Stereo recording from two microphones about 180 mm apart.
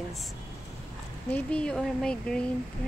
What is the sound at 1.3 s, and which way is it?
A woman's voice, 5° left (ahead or behind).